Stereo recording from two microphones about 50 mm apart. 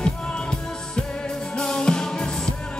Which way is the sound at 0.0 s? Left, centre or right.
Centre.